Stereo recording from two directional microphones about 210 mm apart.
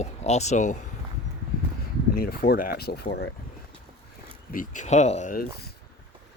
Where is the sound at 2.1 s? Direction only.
45° left (ahead or behind).